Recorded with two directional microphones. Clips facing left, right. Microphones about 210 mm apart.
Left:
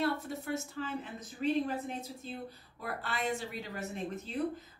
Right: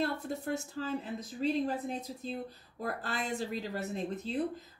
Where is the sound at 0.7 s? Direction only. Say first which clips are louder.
Right 3 dB; 35° right (ahead or behind).